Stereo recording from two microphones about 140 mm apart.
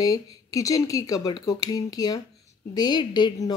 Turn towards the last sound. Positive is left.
turn(degrees=30)  # may be behind; listen again after turning